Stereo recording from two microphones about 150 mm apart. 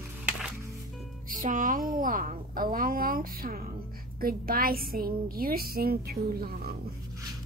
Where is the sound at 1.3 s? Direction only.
60° right (ahead or behind); by 6.7 s 90° right.